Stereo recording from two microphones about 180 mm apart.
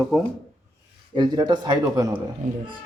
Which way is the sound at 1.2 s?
25° right (ahead or behind).